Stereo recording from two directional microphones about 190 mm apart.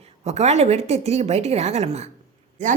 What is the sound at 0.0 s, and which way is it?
A woman's voice, 35° right (ahead or behind).